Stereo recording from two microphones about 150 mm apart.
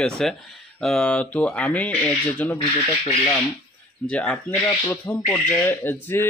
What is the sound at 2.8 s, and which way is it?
Speech, 30° left (ahead or behind).